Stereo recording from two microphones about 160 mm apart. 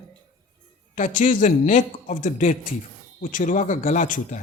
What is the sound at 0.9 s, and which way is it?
A man's voice, 55° left (ahead or behind).